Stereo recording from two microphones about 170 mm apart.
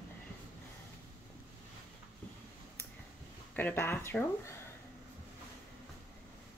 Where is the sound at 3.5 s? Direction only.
10° left (ahead or behind).